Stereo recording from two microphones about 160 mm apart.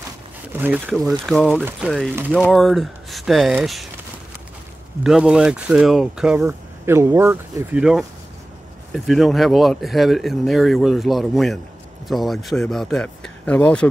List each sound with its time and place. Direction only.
0.5 s speech: 10° right (ahead or behind)
5.0 s speech: 5° right (ahead or behind)
6.4 s speech: 15° right (ahead or behind)
8.9 s speech: centre (ahead or behind)